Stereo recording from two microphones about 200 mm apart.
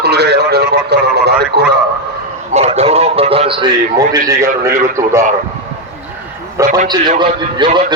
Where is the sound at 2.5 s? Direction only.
30° right (ahead or behind); by 5.2 s 15° right (ahead or behind).